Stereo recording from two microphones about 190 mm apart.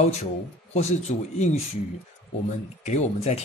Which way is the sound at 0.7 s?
35° left (ahead or behind).